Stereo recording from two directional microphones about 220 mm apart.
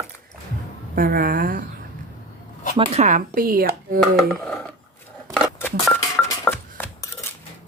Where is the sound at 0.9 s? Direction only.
40° right (ahead or behind).